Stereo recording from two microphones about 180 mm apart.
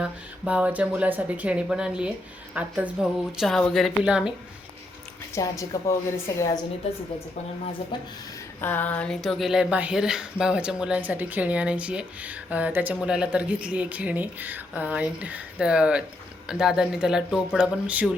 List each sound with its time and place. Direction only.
0.0 s a woman's voice: 5° right (ahead or behind)
5.3 s a woman's voice: 15° left (ahead or behind)
8.6 s a woman's voice: 10° left (ahead or behind); by 18.1 s 5° right (ahead or behind)